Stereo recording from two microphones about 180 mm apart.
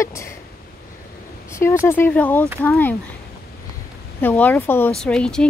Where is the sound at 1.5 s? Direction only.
15° left (ahead or behind).